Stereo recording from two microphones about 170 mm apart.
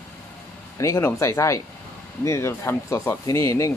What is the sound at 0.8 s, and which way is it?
Speech, 15° left (ahead or behind).